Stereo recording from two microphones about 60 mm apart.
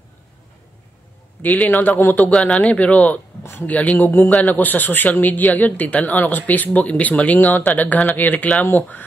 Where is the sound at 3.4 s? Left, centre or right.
Left.